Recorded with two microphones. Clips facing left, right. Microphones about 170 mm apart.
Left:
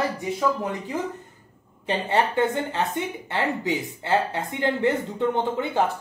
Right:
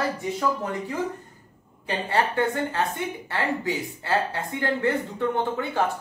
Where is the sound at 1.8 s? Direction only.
20° left (ahead or behind).